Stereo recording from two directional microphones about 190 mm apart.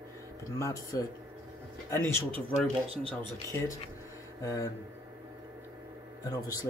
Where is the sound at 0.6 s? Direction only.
15° left (ahead or behind).